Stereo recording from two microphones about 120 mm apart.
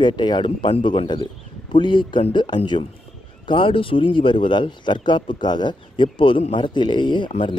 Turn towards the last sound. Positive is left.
turn(degrees=45)  # may be behind; listen again after turning